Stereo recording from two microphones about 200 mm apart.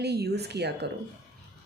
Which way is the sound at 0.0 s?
55° right (ahead or behind).